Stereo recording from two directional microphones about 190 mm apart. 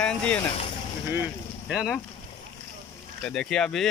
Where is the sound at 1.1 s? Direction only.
10° right (ahead or behind).